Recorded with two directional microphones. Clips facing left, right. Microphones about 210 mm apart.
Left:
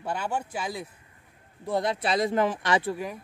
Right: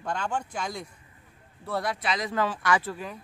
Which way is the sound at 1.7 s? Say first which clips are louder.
Left 3 dB; 20° left (ahead or behind).